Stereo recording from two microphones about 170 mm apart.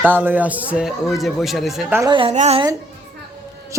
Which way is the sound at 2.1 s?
30° right (ahead or behind).